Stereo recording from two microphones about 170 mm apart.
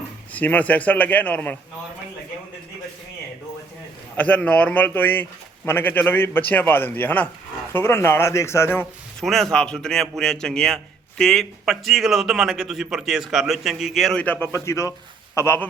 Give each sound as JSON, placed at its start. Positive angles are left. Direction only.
{"t": 0.3, "sound": "speech", "side_deg": 10}
{"t": 4.2, "sound": "speech", "side_deg": 10}
{"t": 9.2, "sound": "a man's voice", "side_deg": 0}